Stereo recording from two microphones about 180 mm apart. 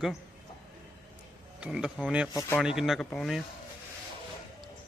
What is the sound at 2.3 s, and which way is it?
Speech, 15° left (ahead or behind).